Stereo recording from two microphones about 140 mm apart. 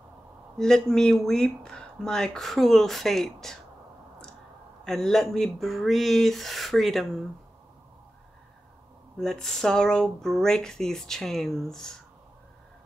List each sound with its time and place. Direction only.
0.6 s speech: 5° left (ahead or behind)
4.8 s speech: 5° left (ahead or behind)
9.2 s speech: 5° left (ahead or behind)